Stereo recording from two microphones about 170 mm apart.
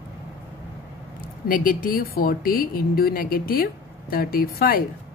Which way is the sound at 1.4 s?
55° left (ahead or behind).